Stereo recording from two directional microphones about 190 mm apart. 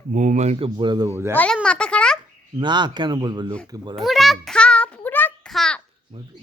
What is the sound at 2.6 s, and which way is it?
Speech, 25° right (ahead or behind).